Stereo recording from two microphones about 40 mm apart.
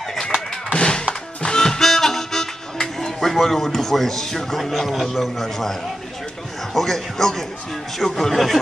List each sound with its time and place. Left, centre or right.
0.7 s music: centre
6.7 s a man's voice: centre